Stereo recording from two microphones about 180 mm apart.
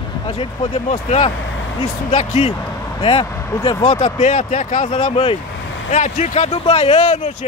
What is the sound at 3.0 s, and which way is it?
Speech, 25° left (ahead or behind).